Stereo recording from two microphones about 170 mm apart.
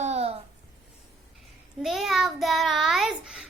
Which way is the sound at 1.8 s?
Centre (ahead or behind).